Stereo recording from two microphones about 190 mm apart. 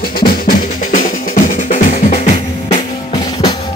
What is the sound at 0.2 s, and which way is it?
Drum, 50° left (ahead or behind).